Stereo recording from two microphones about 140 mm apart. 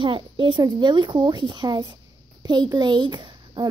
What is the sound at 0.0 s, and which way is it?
A child's voice, 35° right (ahead or behind).